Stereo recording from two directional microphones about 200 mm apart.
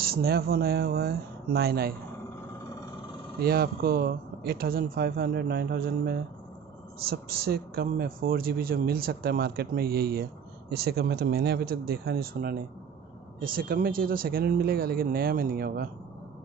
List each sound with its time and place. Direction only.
0.0 s speech: 50° right (ahead or behind)
3.3 s speech: 50° right (ahead or behind)